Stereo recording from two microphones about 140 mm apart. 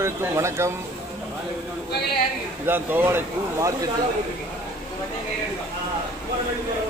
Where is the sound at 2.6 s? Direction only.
15° right (ahead or behind).